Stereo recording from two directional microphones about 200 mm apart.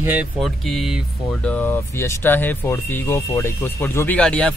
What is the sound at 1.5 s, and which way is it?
Speech, 10° left (ahead or behind).